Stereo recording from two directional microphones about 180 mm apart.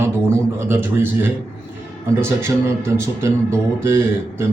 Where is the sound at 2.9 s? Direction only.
15° right (ahead or behind).